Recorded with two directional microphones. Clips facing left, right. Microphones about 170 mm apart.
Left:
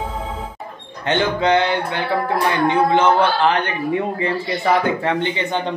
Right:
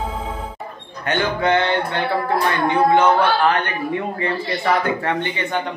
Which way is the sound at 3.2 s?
20° left (ahead or behind).